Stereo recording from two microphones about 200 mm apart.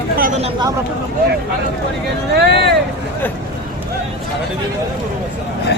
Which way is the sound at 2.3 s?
55° right (ahead or behind).